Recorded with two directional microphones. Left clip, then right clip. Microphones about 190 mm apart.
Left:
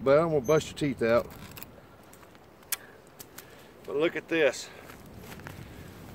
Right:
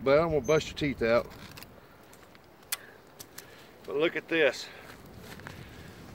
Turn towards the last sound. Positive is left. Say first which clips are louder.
# left 1 dB
turn(degrees=0)  # may be behind; listen again after turning